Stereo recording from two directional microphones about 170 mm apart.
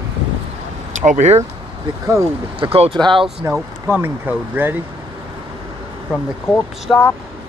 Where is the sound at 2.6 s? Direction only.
30° right (ahead or behind).